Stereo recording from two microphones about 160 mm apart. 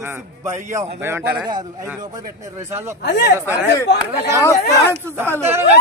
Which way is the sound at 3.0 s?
90° left.